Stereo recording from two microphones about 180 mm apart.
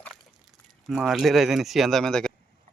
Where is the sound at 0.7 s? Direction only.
Centre (ahead or behind).